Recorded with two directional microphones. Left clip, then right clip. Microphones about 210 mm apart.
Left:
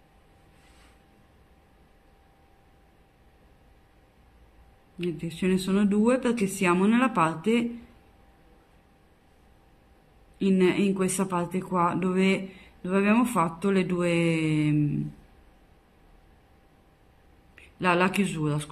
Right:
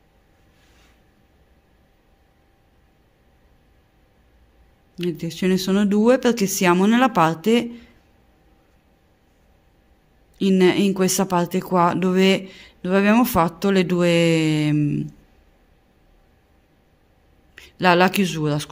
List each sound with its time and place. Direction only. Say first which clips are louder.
4.9 s speech: right 6 dB; 40° right (ahead or behind)
10.3 s speech: right 6 dB; 40° right (ahead or behind)
17.6 s speech: right 8 dB; 40° right (ahead or behind)